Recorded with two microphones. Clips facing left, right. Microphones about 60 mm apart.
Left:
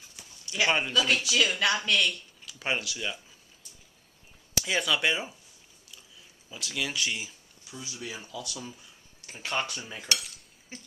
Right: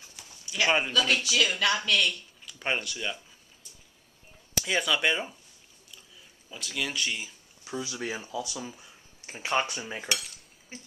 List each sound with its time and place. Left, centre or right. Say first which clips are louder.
0.5 s speech: right 1 dB; centre
4.6 s speech: right 1 dB; centre
6.5 s speech: even; centre
7.7 s speech: right 8 dB; right
8.2 s speech: right 4 dB; right
9.7 s cutlery: right 1 dB; centre
10.7 s speech: even; centre